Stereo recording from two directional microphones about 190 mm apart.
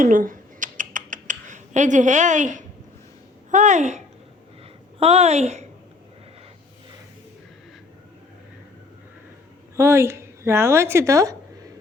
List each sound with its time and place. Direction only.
0.0 s rodents: 45° right (ahead or behind)
3.5 s a woman's voice: 40° right (ahead or behind)
9.7 s a woman's voice: 15° right (ahead or behind)